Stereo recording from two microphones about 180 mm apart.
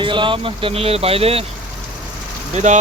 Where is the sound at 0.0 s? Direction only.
30° right (ahead or behind).